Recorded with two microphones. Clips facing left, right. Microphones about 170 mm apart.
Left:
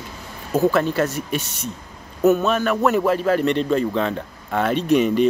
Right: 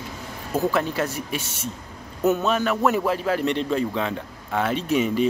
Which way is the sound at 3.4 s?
60° left (ahead or behind).